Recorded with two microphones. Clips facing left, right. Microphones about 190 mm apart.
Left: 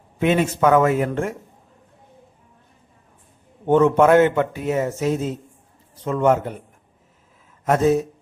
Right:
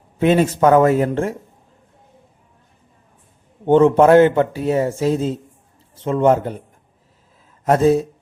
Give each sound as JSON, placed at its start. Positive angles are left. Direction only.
{"t": 0.2, "sound": "speech", "side_deg": -35}
{"t": 3.7, "sound": "speech", "side_deg": -30}
{"t": 7.6, "sound": "speech", "side_deg": -30}